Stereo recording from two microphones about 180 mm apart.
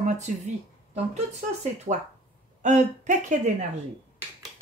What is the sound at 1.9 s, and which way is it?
A woman's voice, 40° right (ahead or behind).